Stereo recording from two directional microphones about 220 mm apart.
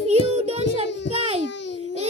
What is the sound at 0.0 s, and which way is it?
Child singing, 30° right (ahead or behind).